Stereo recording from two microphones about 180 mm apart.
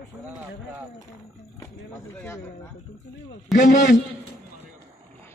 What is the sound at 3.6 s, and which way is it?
Speech, 60° left (ahead or behind).